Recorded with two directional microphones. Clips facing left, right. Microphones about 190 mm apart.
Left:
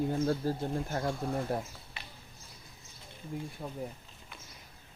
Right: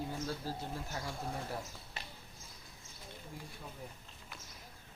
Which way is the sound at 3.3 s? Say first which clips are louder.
Left 12 dB; 60° left (ahead or behind).